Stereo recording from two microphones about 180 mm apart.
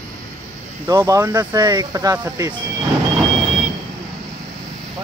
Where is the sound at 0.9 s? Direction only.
15° right (ahead or behind).